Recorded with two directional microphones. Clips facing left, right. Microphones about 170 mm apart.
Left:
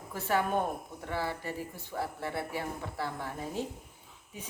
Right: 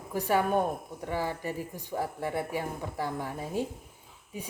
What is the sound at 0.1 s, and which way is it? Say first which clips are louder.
Speech: right 3 dB; 15° right (ahead or behind).